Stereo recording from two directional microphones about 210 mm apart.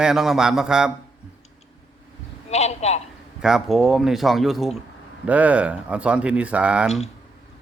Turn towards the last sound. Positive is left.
turn(degrees=-5)  # may be behind; listen again after turning